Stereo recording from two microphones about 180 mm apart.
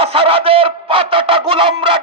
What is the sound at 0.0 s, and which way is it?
Music, 30° right (ahead or behind).